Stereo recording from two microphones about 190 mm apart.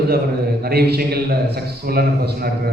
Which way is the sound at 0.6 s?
55° right (ahead or behind).